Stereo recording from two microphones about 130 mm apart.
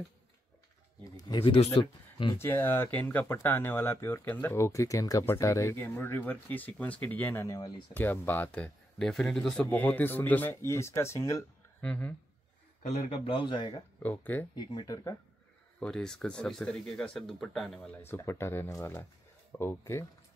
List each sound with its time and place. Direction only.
1.0 s a sound: 30° left (ahead or behind)
1.4 s speech: 45° left (ahead or behind)
2.3 s speech: 20° left (ahead or behind)
7.9 s speech: 15° left (ahead or behind)
11.8 s speech: 10° left (ahead or behind)
12.8 s speech: 55° left (ahead or behind); by 13.8 s 40° left (ahead or behind)
14.0 s speech: 15° left (ahead or behind)
14.5 s speech: 35° left (ahead or behind)
15.8 s speech: 5° left (ahead or behind)
18.0 s speech: 20° left (ahead or behind)